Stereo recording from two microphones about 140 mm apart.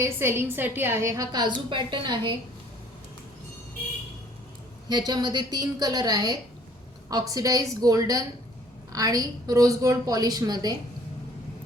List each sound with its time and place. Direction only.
0.0 s a woman's voice: 20° right (ahead or behind); by 2.3 s 35° right (ahead or behind)
4.9 s a woman's voice: 30° right (ahead or behind)